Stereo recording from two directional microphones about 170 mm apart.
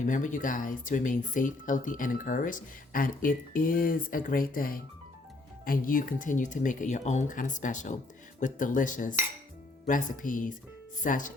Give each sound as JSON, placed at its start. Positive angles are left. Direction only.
{"t": 0.0, "sound": "speech", "side_deg": 50}